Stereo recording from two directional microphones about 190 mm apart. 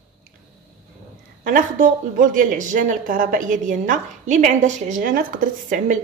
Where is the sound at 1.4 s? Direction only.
45° right (ahead or behind).